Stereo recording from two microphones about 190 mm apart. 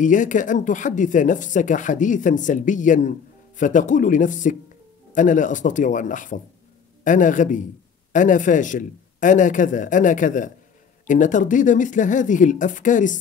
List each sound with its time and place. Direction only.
0.0 s speech: 40° left (ahead or behind)